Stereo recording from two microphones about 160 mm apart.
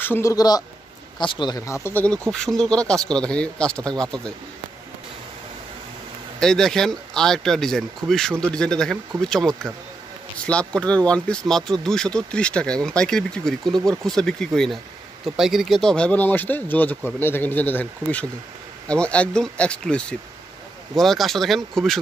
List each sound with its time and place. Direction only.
0.0 s speech: 15° left (ahead or behind)
2.3 s speech: 5° left (ahead or behind)
6.4 s speech: 5° left (ahead or behind)